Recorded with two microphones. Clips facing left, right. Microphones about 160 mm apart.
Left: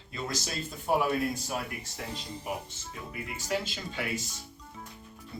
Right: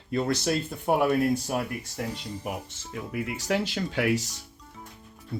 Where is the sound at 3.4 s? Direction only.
70° right (ahead or behind).